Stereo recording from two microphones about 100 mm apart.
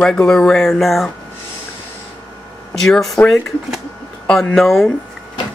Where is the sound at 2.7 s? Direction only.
5° left (ahead or behind).